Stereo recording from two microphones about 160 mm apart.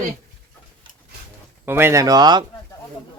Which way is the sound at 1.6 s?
15° right (ahead or behind).